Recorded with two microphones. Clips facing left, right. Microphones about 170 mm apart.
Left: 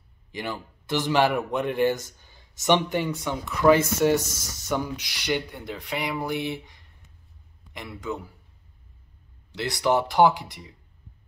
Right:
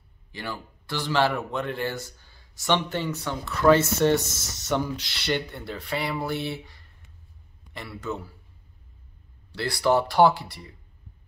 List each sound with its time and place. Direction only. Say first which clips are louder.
0.3 s a man's voice: left 3 dB; 15° left (ahead or behind)
9.5 s a man's voice: right 1 dB; 20° left (ahead or behind)